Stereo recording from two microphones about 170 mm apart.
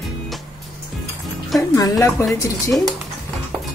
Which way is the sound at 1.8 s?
20° left (ahead or behind).